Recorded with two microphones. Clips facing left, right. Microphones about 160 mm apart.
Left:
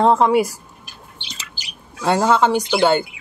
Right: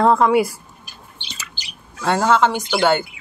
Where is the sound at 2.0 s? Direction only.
15° left (ahead or behind).